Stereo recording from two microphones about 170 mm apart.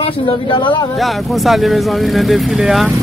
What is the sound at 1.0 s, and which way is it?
Speech, centre (ahead or behind).